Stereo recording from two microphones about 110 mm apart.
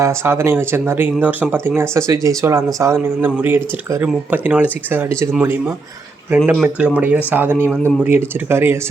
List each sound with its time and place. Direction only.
0.0 s speech: 25° right (ahead or behind)
6.3 s speech: 20° right (ahead or behind)